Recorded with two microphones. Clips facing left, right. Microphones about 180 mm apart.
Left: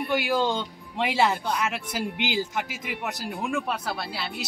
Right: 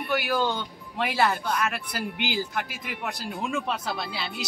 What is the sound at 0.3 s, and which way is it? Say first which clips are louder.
Speech: left 2 dB; 20° left (ahead or behind).